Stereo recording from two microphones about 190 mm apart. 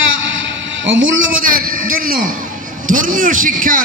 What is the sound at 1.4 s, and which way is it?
A man's voice, 50° right (ahead or behind).